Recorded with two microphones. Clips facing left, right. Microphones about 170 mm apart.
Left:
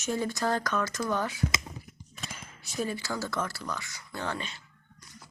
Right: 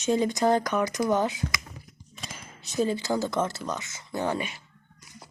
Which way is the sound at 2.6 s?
25° right (ahead or behind).